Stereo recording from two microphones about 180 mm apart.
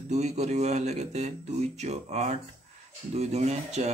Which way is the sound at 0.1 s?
40° right (ahead or behind).